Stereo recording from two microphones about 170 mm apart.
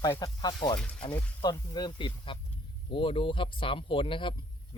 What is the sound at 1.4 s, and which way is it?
Speech, 25° left (ahead or behind).